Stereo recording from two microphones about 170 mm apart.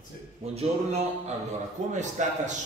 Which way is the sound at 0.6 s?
40° right (ahead or behind).